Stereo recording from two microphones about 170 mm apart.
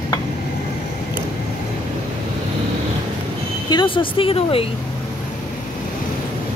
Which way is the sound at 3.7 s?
30° left (ahead or behind).